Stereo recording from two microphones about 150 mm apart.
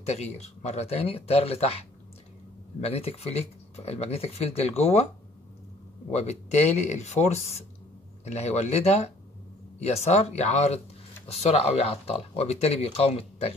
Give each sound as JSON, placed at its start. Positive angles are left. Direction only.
{"t": 0.0, "sound": "speech", "side_deg": 45}
{"t": 6.1, "sound": "speech", "side_deg": 45}